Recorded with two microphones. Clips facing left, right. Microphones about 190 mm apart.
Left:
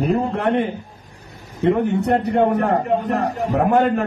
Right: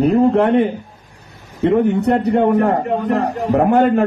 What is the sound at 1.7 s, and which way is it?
A man's voice, 55° right (ahead or behind).